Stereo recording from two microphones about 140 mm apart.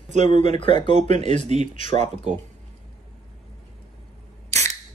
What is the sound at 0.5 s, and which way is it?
Speech, 40° left (ahead or behind).